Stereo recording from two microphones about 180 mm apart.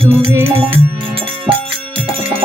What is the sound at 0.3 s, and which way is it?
Music, 15° right (ahead or behind).